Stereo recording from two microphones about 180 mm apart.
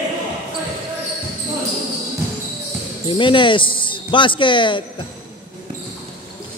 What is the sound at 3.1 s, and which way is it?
Speech, 25° left (ahead or behind).